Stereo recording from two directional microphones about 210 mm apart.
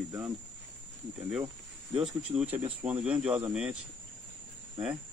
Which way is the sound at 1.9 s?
25° right (ahead or behind).